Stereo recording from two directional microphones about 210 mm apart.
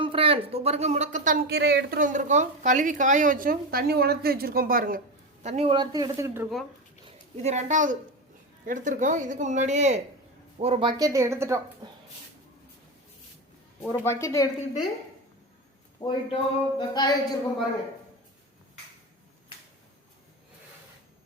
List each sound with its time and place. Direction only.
0.0 s speech: 25° right (ahead or behind)
7.0 s a woman's voice: 30° right (ahead or behind); by 11.6 s 15° right (ahead or behind)
11.8 s dog: 20° right (ahead or behind)
13.8 s speech: 10° left (ahead or behind)
16.0 s speech: 25° left (ahead or behind)